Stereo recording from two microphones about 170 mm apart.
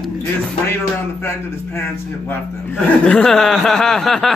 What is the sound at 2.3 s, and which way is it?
Speech, 5° left (ahead or behind).